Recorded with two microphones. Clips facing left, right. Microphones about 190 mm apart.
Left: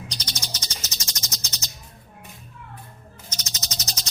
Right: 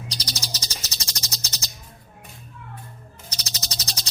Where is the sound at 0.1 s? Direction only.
35° right (ahead or behind).